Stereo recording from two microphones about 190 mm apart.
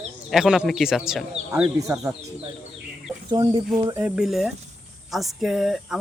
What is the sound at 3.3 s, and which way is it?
Speech, 20° right (ahead or behind).